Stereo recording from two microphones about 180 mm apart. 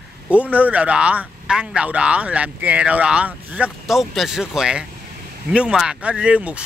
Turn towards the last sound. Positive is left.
turn(degrees=-5)  # may be behind; listen again after turning